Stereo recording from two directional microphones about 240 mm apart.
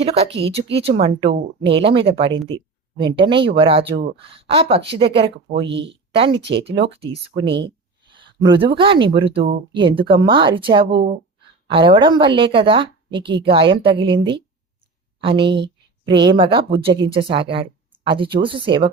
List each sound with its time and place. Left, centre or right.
0.0 s speech: right